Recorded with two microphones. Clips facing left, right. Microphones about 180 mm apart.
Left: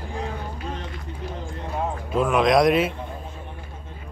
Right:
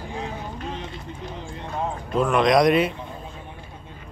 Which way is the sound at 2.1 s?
Centre (ahead or behind).